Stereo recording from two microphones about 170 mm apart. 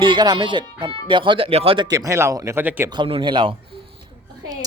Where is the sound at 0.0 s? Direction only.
25° right (ahead or behind).